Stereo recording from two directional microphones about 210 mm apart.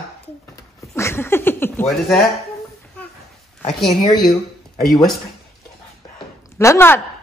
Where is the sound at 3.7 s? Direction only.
Centre (ahead or behind).